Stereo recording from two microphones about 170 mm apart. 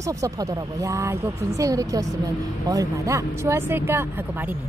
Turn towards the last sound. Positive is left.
turn(degrees=-10)  # may be behind; listen again after turning